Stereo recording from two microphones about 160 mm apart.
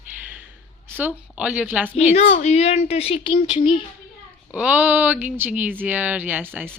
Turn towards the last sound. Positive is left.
turn(degrees=-10)  # may be behind; listen again after turning